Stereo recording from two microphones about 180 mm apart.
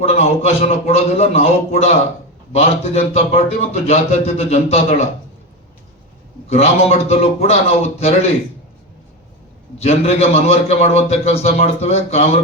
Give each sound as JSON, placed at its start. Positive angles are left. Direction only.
{"t": 0.0, "sound": "a man's voice", "side_deg": 35}
{"t": 6.5, "sound": "a man's voice", "side_deg": 35}
{"t": 9.7, "sound": "a man's voice", "side_deg": 35}